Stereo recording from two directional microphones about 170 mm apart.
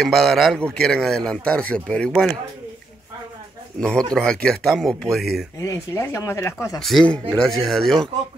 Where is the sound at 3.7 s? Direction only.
5° left (ahead or behind).